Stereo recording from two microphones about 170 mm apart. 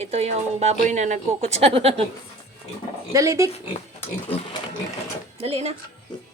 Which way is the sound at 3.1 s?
20° right (ahead or behind).